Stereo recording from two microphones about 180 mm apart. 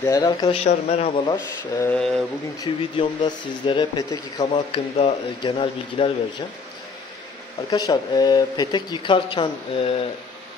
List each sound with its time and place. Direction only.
0.0 s speech: 20° left (ahead or behind)
0.6 s speech: 35° left (ahead or behind)
1.9 s speech: centre (ahead or behind)
2.6 s speech: 25° left (ahead or behind)
7.7 s speech: 25° left (ahead or behind)